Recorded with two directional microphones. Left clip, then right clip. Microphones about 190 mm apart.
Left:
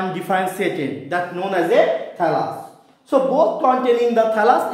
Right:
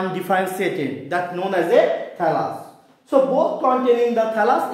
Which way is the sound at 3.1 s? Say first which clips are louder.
Even; 20° left (ahead or behind).